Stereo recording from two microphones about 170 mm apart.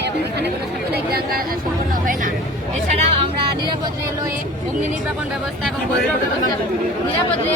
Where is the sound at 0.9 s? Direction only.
65° right (ahead or behind).